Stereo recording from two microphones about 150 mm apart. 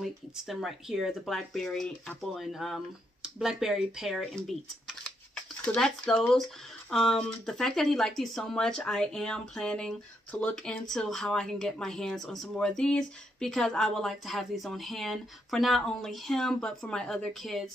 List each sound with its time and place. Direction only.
0.0 s speech: centre (ahead or behind)
4.8 s a sound: 5° left (ahead or behind)
6.9 s speech: 5° left (ahead or behind)